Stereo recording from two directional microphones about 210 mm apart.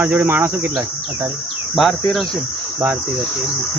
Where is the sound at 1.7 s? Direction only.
Centre (ahead or behind).